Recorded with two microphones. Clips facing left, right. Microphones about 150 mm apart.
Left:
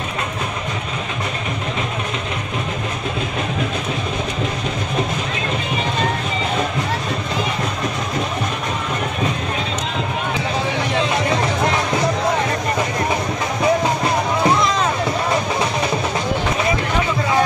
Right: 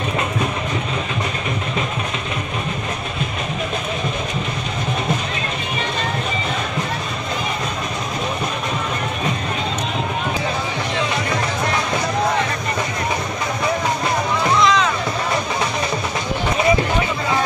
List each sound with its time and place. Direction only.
14.6 s music: 50° left (ahead or behind)